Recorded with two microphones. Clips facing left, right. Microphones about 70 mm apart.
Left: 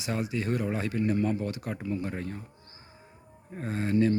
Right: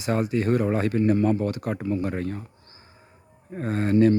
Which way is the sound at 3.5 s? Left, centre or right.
Right.